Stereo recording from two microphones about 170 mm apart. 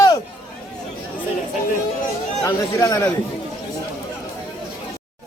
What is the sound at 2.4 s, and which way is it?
Speech, 15° left (ahead or behind).